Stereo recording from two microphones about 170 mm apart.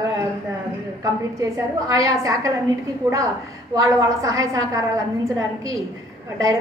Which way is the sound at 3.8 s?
20° right (ahead or behind).